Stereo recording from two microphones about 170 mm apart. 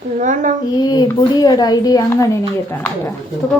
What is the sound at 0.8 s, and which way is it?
A woman's voice, 25° left (ahead or behind).